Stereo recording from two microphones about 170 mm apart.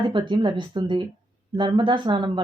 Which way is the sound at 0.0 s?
30° right (ahead or behind).